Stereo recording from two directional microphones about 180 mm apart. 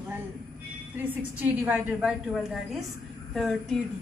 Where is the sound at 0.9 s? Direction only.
10° right (ahead or behind).